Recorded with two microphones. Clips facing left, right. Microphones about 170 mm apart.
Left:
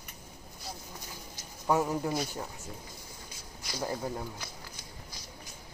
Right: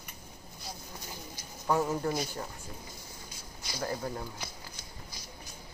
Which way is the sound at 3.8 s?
15° left (ahead or behind).